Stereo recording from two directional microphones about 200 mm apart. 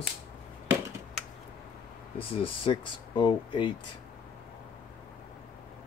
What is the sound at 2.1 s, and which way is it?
Speech, 25° left (ahead or behind).